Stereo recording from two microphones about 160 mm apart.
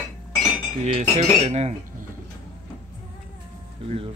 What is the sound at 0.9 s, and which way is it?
Speech, 40° right (ahead or behind).